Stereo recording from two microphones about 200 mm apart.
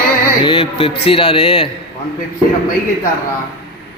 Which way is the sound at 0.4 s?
25° left (ahead or behind).